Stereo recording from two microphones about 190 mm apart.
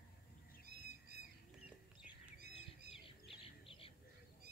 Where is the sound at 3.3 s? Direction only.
30° left (ahead or behind).